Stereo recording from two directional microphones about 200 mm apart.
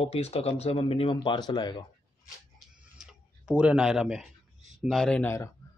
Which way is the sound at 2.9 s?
5° right (ahead or behind).